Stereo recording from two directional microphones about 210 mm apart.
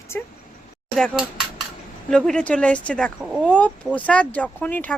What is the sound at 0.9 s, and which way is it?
Speech, 5° left (ahead or behind).